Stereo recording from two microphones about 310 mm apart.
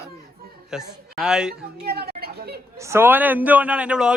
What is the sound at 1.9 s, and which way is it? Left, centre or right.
Chatter, right.